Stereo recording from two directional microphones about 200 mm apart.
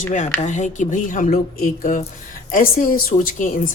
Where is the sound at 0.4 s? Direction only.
40° left (ahead or behind).